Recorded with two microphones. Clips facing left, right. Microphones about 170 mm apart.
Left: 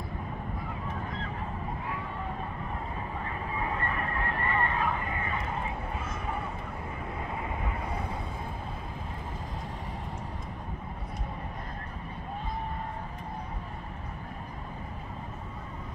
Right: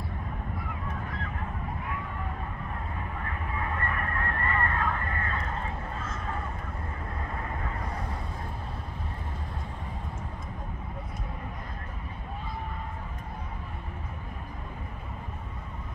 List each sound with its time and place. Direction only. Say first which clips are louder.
3.3 s honk: left 1 dB; 20° left (ahead or behind)